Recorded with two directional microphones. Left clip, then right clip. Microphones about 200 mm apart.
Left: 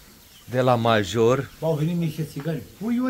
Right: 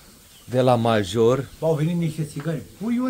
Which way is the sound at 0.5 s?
20° right (ahead or behind).